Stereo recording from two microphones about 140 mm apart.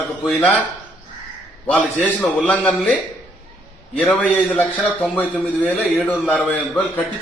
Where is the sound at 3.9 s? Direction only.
10° left (ahead or behind).